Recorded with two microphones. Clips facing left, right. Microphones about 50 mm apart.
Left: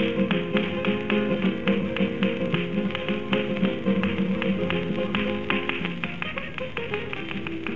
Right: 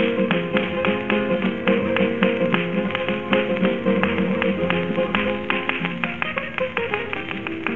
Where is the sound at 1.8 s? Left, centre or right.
Right.